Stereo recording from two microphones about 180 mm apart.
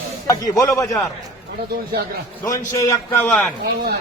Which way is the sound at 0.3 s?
20° left (ahead or behind).